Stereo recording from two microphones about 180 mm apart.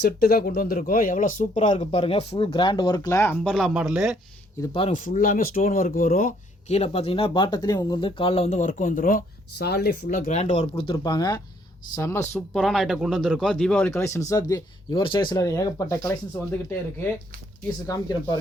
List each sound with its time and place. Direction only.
0.0 s speech: 60° left (ahead or behind); by 4.2 s 5° right (ahead or behind)
4.6 s speech: 30° left (ahead or behind)
4.9 s speech: 45° left (ahead or behind)
10.9 s speech: 20° left (ahead or behind)
12.5 s speech: centre (ahead or behind); by 18.3 s 20° left (ahead or behind)